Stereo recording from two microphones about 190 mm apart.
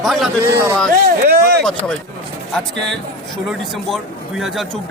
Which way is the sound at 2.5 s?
5° left (ahead or behind).